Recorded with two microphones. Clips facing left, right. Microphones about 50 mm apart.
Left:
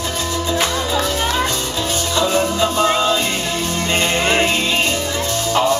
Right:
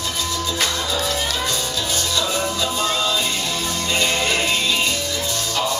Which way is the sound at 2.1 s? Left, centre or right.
Left.